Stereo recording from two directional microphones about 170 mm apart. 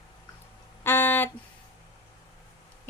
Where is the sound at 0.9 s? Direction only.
10° left (ahead or behind).